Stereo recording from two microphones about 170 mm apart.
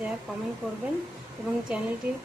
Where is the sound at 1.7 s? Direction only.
5° right (ahead or behind).